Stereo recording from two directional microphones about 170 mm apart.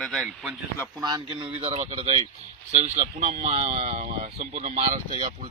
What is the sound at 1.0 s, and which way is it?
Speech, 30° right (ahead or behind).